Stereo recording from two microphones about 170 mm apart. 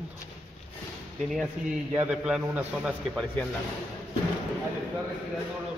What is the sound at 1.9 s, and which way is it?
A man's voice, 5° right (ahead or behind).